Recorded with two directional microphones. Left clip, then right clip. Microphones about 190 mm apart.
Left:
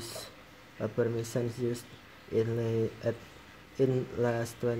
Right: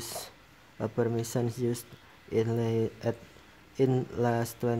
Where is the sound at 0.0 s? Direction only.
25° right (ahead or behind).